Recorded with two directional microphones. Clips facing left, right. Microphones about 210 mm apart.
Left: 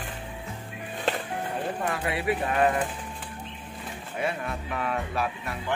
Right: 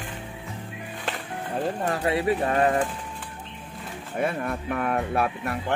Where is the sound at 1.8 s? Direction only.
40° right (ahead or behind).